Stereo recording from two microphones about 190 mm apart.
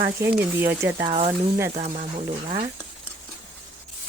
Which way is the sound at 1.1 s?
35° right (ahead or behind).